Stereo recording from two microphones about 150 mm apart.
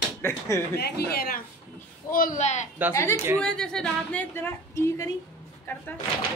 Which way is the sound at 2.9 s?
20° left (ahead or behind).